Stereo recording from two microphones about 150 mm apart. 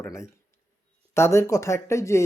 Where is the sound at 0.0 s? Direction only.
20° left (ahead or behind).